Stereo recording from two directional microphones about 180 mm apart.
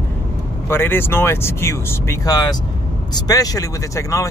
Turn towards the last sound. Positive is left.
turn(degrees=20)  # may be behind; listen again after turning